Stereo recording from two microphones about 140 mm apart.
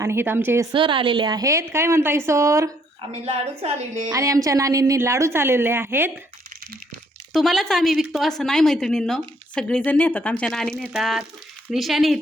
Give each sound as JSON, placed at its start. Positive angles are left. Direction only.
{"t": 0.0, "sound": "a woman's voice", "side_deg": -20}
{"t": 0.7, "sound": "a woman's voice", "side_deg": -35}
{"t": 3.0, "sound": "a woman's voice", "side_deg": -45}
{"t": 4.1, "sound": "a woman's voice", "side_deg": -25}
{"t": 7.3, "sound": "speech", "side_deg": 0}